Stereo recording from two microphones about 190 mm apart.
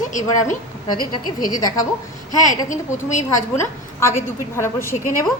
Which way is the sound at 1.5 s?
20° left (ahead or behind).